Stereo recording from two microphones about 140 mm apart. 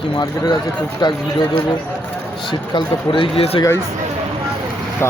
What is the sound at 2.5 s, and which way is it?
Speech, 35° left (ahead or behind).